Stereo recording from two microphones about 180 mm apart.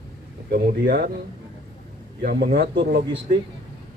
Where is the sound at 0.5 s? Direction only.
55° right (ahead or behind).